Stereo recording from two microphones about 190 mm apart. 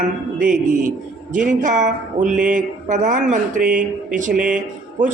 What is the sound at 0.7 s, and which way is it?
A man's voice, 45° right (ahead or behind).